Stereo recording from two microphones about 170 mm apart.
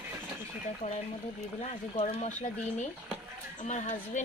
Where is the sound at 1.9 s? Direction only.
40° left (ahead or behind).